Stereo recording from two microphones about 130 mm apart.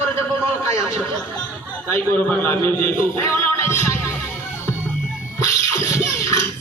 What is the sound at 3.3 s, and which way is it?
Music, 15° left (ahead or behind).